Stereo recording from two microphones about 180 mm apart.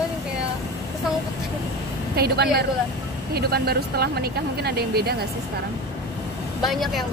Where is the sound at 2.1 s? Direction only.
60° right (ahead or behind).